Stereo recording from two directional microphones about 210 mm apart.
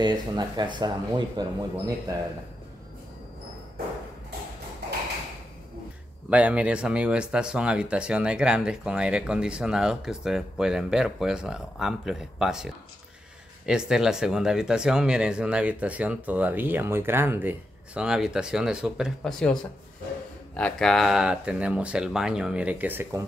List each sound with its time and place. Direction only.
0.0 s speech: 20° right (ahead or behind)
6.3 s speech: 5° right (ahead or behind)